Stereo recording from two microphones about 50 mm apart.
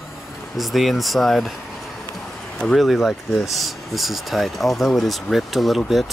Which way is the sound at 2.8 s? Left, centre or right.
Centre.